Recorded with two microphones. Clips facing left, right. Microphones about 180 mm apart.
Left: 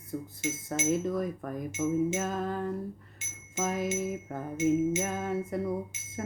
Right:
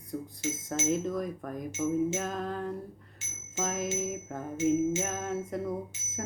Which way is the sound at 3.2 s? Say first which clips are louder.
Even; 15° left (ahead or behind).